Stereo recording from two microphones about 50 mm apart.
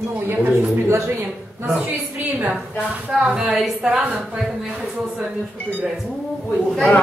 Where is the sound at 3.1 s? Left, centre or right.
Centre.